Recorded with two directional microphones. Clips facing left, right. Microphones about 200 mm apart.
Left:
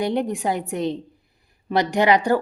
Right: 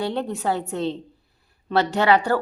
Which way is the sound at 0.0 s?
15° left (ahead or behind).